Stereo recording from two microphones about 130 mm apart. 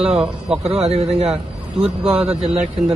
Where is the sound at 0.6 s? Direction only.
55° right (ahead or behind).